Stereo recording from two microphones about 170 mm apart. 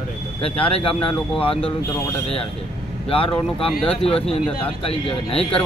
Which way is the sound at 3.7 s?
Centre (ahead or behind).